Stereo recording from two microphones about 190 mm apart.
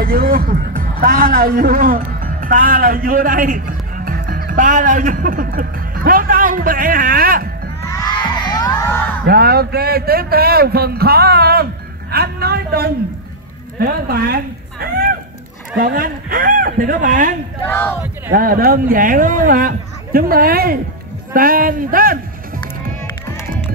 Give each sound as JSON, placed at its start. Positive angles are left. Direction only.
{"t": 0.0, "sound": "a man's voice", "side_deg": -50}
{"t": 7.9, "sound": "crowd", "side_deg": 20}
{"t": 9.2, "sound": "a man's voice", "side_deg": -55}
{"t": 17.6, "sound": "speech", "side_deg": 10}
{"t": 18.3, "sound": "speech", "side_deg": -50}